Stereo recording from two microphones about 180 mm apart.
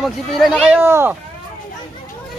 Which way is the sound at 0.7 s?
15° right (ahead or behind).